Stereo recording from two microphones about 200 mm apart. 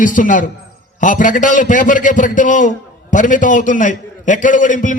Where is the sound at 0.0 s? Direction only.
40° left (ahead or behind).